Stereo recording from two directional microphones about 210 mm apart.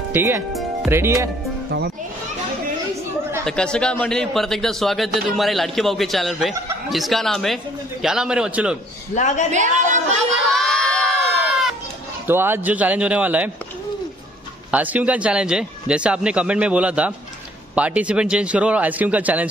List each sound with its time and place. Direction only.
0.1 s a man's voice: 10° right (ahead or behind)
3.4 s a man's voice: 5° left (ahead or behind)
9.1 s a woman's voice: 35° left (ahead or behind)
10.5 s crowd: centre (ahead or behind)
12.3 s a man's voice: 10° right (ahead or behind)
14.7 s a man's voice: 5° right (ahead or behind)